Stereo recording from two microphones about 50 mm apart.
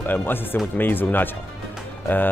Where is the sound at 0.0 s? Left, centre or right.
Left.